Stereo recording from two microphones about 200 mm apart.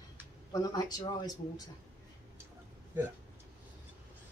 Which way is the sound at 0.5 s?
20° left (ahead or behind).